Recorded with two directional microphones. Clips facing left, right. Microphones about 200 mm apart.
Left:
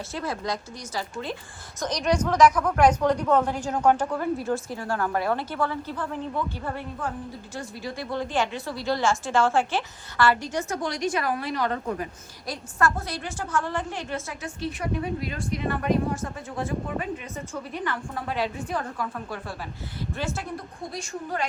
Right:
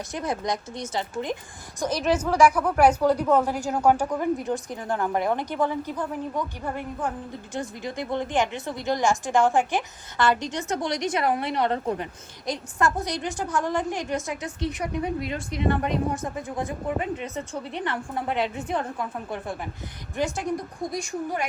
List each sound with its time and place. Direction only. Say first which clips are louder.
0.1 s a woman's voice: right 2 dB; 20° right (ahead or behind)
1.8 s a woman's voice: right 1 dB; 5° right (ahead or behind)